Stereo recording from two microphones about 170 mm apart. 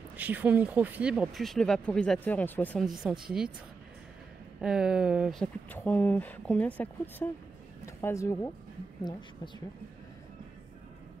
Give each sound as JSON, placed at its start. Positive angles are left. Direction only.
{"t": 0.2, "sound": "speech", "side_deg": -10}
{"t": 2.8, "sound": "speech", "side_deg": 0}
{"t": 4.6, "sound": "speech", "side_deg": -5}